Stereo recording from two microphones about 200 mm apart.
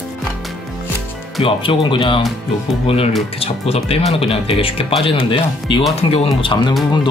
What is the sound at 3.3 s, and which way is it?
Speech, 30° left (ahead or behind).